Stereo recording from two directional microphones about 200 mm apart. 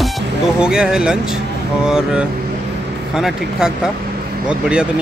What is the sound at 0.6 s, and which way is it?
Speech, 5° right (ahead or behind).